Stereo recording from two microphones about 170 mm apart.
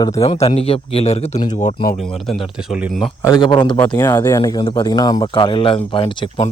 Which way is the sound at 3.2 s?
25° left (ahead or behind).